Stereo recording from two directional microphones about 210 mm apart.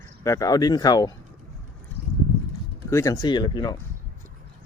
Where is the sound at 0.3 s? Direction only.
15° left (ahead or behind).